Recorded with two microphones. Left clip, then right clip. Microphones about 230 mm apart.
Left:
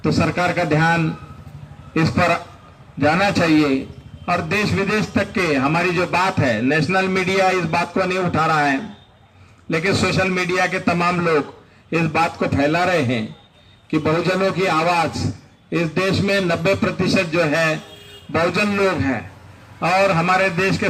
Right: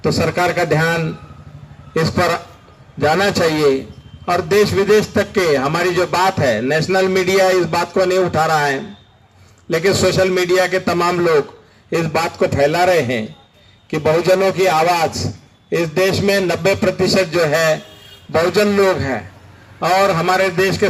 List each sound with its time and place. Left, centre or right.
0.0 s a man's voice: right